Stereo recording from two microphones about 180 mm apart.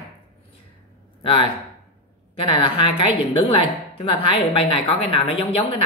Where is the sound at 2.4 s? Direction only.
30° left (ahead or behind).